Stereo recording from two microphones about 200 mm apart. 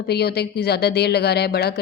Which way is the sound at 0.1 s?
55° left (ahead or behind).